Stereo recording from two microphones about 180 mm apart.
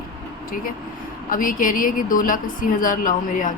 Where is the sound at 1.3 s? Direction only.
50° left (ahead or behind).